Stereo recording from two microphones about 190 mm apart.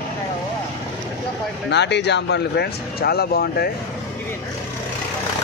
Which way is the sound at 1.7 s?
65° left (ahead or behind).